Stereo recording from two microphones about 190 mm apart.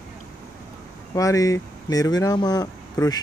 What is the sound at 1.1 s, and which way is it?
Speech, 15° left (ahead or behind).